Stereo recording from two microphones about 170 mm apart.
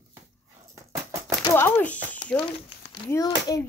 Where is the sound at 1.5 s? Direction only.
10° left (ahead or behind).